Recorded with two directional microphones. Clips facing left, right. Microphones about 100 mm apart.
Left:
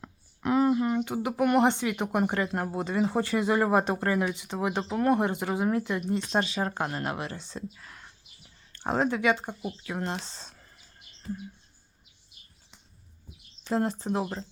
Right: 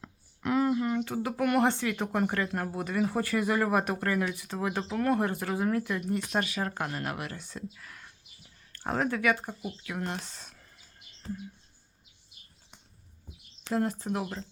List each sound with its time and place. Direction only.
0.0 s speech: 20° left (ahead or behind)
13.7 s speech: 30° left (ahead or behind)